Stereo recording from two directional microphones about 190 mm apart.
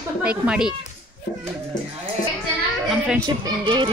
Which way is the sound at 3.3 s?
25° right (ahead or behind).